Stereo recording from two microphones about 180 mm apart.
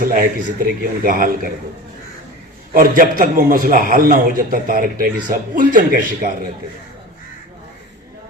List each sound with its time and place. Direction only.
0.0 s a man's voice: 55° right (ahead or behind)
2.7 s a man's voice: 50° right (ahead or behind)